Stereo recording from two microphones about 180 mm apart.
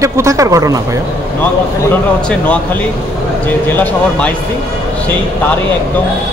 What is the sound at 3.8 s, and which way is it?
Speech, 10° left (ahead or behind).